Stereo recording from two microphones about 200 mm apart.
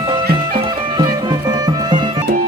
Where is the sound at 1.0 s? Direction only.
20° right (ahead or behind).